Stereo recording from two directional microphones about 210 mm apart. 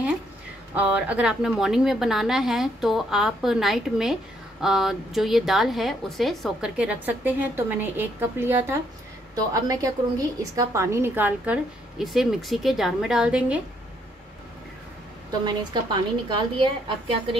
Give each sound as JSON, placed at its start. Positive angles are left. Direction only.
{"t": 0.7, "sound": "a woman's voice", "side_deg": -5}
{"t": 15.4, "sound": "a woman's voice", "side_deg": -20}